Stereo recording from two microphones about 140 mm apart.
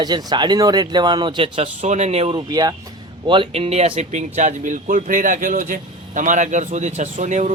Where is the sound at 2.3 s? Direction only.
30° right (ahead or behind).